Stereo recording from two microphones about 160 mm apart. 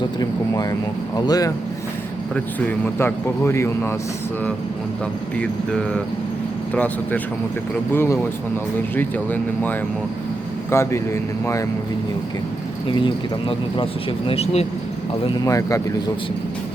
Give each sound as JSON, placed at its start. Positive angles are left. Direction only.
{"t": 0.2, "sound": "speech", "side_deg": 25}
{"t": 2.3, "sound": "a man's voice", "side_deg": 10}
{"t": 5.4, "sound": "a man's voice", "side_deg": 5}
{"t": 12.9, "sound": "speech", "side_deg": 30}
{"t": 15.4, "sound": "speech", "side_deg": 20}